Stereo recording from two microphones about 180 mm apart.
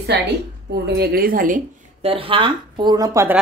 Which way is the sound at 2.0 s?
30° right (ahead or behind).